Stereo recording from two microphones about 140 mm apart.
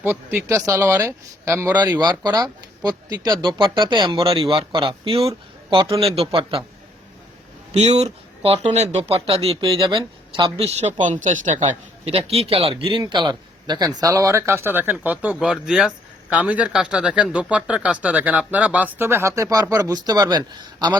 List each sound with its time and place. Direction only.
0.0 s speech: 15° right (ahead or behind)
2.0 s speech: 30° right (ahead or behind)
7.7 s speech: 50° right (ahead or behind)
11.0 s speech: 60° right (ahead or behind)
11.6 s a man's voice: 45° right (ahead or behind); by 21.0 s 30° right (ahead or behind)